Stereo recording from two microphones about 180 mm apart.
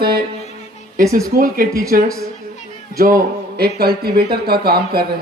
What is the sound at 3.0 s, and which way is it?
A man's voice, 50° right (ahead or behind).